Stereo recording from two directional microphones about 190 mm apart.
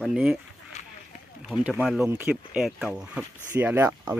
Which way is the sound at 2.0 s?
10° right (ahead or behind).